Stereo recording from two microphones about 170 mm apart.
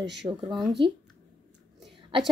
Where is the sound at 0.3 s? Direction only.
25° right (ahead or behind).